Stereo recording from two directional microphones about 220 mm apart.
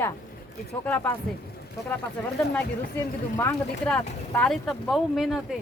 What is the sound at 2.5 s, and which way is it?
Speech, 10° left (ahead or behind).